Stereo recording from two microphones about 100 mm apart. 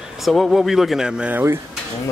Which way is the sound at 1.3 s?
25° right (ahead or behind).